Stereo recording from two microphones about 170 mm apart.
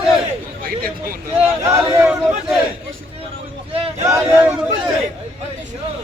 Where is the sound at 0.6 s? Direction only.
55° right (ahead or behind).